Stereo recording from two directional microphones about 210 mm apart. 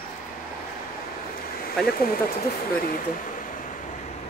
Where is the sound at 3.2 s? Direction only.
40° left (ahead or behind).